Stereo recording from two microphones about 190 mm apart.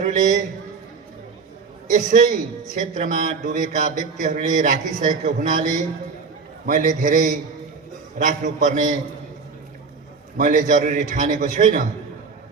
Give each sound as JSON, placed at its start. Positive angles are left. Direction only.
{"t": 0.0, "sound": "a sound", "side_deg": -40}
{"t": 1.9, "sound": "a man's voice", "side_deg": -40}
{"t": 10.3, "sound": "speech", "side_deg": -40}